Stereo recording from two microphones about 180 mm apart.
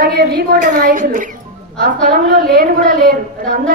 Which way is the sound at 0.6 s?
40° right (ahead or behind).